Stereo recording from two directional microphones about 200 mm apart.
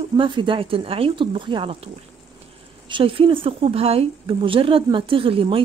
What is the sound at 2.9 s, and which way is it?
A woman's voice, 25° right (ahead or behind).